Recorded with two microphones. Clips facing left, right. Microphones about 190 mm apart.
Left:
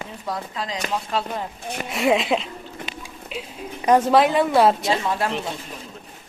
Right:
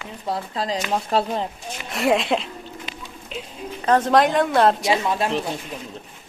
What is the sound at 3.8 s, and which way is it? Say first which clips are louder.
A woman's voice: left 1 dB; 10° left (ahead or behind).